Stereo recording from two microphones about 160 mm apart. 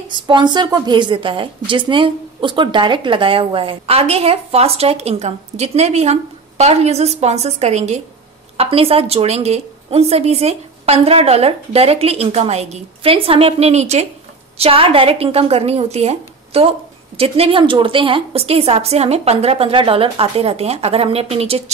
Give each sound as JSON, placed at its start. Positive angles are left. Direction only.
{"t": 0.1, "sound": "a woman's voice", "side_deg": -30}